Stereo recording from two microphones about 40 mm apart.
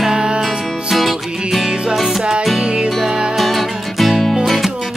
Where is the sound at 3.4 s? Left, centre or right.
Centre.